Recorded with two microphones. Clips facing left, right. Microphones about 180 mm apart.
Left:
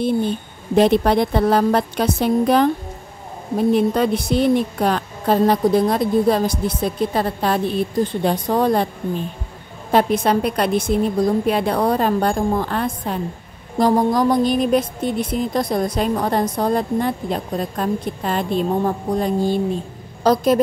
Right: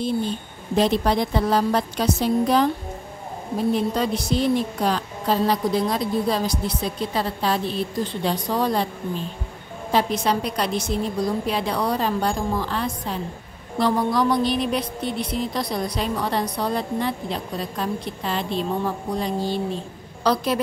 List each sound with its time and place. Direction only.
0.0 s a woman's voice: 60° left (ahead or behind)